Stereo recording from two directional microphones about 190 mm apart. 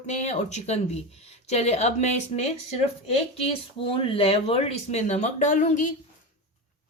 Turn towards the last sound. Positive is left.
turn(degrees=40)  # may be behind; listen again after turning